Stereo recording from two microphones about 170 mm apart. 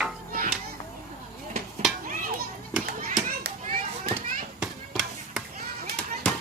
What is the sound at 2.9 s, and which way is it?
Children playing, 60° right (ahead or behind).